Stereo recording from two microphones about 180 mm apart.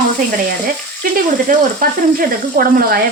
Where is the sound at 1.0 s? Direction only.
50° right (ahead or behind).